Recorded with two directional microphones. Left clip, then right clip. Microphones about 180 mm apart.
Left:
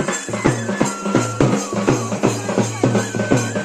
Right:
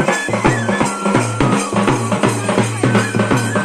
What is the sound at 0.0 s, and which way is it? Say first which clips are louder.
Music: right 5 dB; 35° right (ahead or behind).